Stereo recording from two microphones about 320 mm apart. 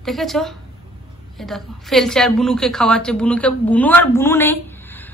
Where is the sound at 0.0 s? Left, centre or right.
Centre.